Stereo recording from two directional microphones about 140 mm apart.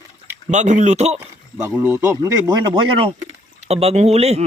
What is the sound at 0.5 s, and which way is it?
Speech, 60° right (ahead or behind).